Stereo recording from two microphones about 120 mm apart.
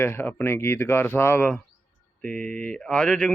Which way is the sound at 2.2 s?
10° left (ahead or behind).